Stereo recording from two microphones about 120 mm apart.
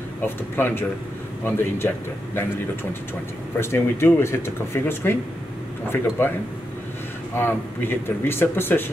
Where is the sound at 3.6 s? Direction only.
20° left (ahead or behind).